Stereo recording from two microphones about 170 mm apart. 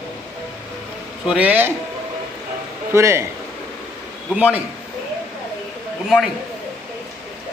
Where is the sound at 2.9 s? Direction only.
15° right (ahead or behind).